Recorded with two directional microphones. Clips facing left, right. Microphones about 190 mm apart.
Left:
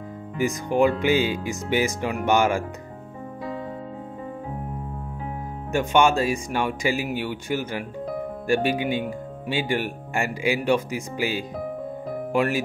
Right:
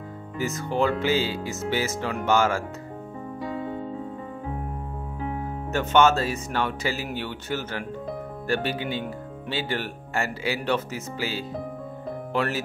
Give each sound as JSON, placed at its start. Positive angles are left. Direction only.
{"t": 0.4, "sound": "speech", "side_deg": 15}
{"t": 5.7, "sound": "speech", "side_deg": 15}